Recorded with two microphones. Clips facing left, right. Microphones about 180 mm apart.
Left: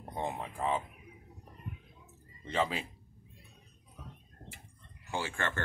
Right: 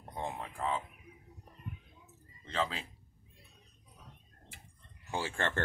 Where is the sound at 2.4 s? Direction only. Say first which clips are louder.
Left 3 dB; 10° left (ahead or behind).